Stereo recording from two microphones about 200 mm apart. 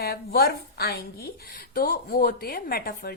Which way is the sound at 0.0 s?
50° left (ahead or behind).